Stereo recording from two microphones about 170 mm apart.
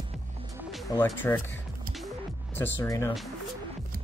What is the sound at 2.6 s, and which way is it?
Speech, 15° left (ahead or behind).